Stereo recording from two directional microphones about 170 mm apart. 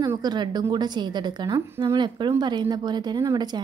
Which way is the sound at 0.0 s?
25° right (ahead or behind).